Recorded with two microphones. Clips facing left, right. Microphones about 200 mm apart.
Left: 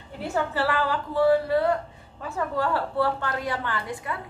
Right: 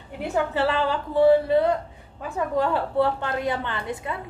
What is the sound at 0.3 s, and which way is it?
A woman's voice, 20° right (ahead or behind).